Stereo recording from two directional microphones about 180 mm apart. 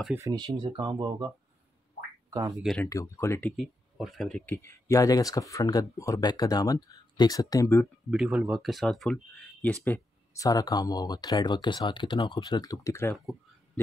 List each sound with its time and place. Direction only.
0.1 s speech: 20° right (ahead or behind)
2.5 s speech: centre (ahead or behind)
2.8 s speech: 15° left (ahead or behind)
8.1 s speech: 5° right (ahead or behind); by 13.2 s 15° left (ahead or behind)